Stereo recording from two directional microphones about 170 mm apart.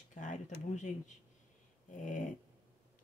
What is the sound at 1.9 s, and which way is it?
Speech, 45° left (ahead or behind).